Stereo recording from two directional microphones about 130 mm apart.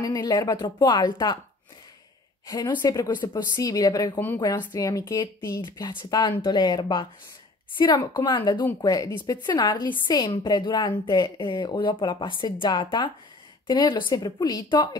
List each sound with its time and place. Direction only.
0.0 s a woman's voice: 30° left (ahead or behind)
2.4 s a woman's voice: 30° left (ahead or behind)